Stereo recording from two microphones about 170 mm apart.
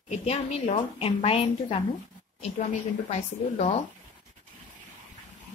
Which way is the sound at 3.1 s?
40° left (ahead or behind).